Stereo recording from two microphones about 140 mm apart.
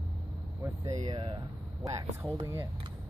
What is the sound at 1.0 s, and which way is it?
Speech, 35° right (ahead or behind).